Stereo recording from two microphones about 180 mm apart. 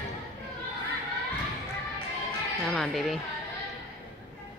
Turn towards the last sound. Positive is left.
turn(degrees=0)  # may be behind; listen again after turning